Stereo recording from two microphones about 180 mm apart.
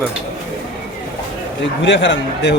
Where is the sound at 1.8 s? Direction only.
80° left.